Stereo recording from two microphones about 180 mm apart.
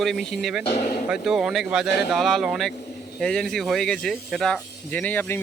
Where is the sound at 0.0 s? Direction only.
Centre (ahead or behind).